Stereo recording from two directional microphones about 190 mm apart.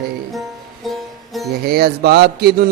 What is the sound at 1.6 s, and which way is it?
Speech, 55° right (ahead or behind).